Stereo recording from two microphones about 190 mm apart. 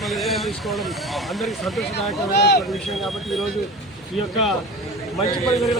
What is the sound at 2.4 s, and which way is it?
Speech, 60° left (ahead or behind).